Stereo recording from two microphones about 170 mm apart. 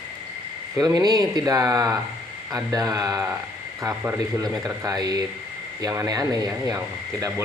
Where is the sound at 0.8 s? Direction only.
20° right (ahead or behind).